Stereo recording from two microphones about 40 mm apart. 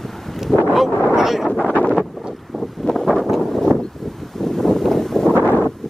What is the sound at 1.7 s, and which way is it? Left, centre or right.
Wind noise, left.